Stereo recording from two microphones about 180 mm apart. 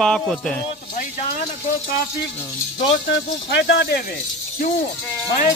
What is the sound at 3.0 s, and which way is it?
Speech, 75° left (ahead or behind).